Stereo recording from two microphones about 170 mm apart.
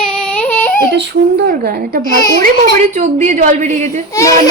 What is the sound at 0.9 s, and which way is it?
A woman's voice, 70° right (ahead or behind).